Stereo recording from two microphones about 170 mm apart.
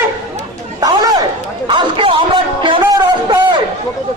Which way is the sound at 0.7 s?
20° right (ahead or behind).